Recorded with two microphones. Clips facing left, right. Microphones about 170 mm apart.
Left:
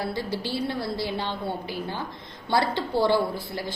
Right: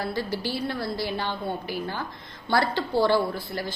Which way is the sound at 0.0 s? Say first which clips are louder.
Right 1 dB; 25° left (ahead or behind).